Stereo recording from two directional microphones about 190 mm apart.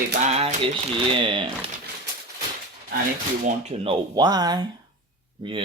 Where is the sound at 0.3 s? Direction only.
30° right (ahead or behind).